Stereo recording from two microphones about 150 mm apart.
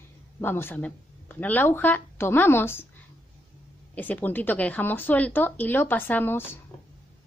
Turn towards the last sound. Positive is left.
turn(degrees=15)  # may be behind; listen again after turning